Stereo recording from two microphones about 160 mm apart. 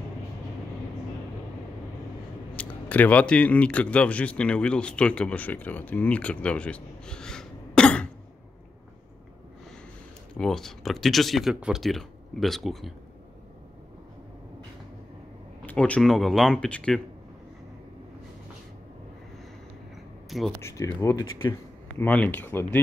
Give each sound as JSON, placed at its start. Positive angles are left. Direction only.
{"t": 2.5, "sound": "speech", "side_deg": 10}
{"t": 10.3, "sound": "speech", "side_deg": 5}
{"t": 15.6, "sound": "speech", "side_deg": 10}
{"t": 20.2, "sound": "a sound", "side_deg": 0}
{"t": 20.6, "sound": "speech", "side_deg": 20}